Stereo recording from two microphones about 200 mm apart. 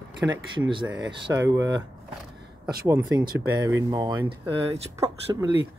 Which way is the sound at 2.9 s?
20° right (ahead or behind).